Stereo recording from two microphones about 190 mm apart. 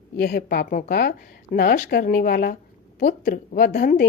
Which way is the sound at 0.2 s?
55° left (ahead or behind).